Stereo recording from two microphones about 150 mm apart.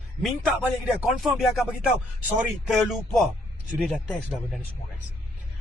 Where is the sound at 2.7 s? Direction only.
Centre (ahead or behind).